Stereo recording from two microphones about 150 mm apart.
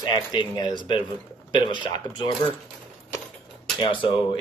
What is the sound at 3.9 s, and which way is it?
Speech, 35° left (ahead or behind).